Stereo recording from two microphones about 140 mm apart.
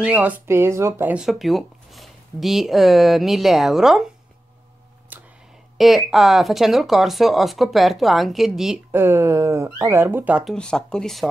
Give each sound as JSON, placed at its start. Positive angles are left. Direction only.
{"t": 0.0, "sound": "speech", "side_deg": -10}
{"t": 1.1, "sound": "speech", "side_deg": 0}
{"t": 5.1, "sound": "a sound", "side_deg": -15}
{"t": 5.8, "sound": "speech", "side_deg": 0}
{"t": 8.9, "sound": "speech", "side_deg": -20}
{"t": 10.4, "sound": "speech", "side_deg": 5}